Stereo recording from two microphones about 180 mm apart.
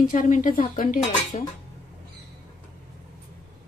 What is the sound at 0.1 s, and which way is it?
Speech, 45° left (ahead or behind).